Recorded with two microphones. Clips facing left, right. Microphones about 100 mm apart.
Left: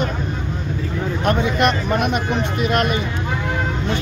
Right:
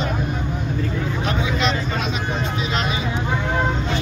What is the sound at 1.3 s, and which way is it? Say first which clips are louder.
Speech: left 6 dB; 55° left (ahead or behind).